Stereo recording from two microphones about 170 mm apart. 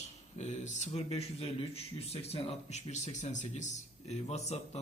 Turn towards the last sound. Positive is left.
turn(degrees=40)  # may be behind; listen again after turning